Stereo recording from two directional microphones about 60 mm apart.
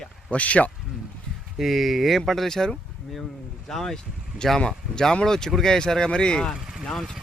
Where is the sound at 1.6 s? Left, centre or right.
Centre.